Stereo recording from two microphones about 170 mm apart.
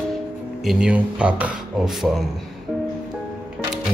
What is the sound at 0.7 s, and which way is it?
Speech, 5° right (ahead or behind).